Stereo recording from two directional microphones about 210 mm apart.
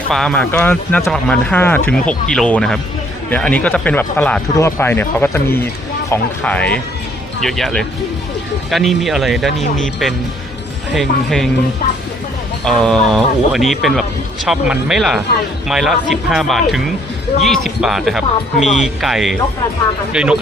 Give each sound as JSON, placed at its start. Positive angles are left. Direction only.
{"t": 0.1, "sound": "speech", "side_deg": 5}
{"t": 12.6, "sound": "speech", "side_deg": 5}
{"t": 18.6, "sound": "speech", "side_deg": 35}
{"t": 19.0, "sound": "speech", "side_deg": 0}